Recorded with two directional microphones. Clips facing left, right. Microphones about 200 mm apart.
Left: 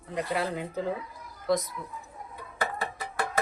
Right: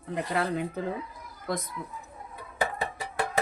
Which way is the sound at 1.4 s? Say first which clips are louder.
Left 6 dB; 55° right (ahead or behind).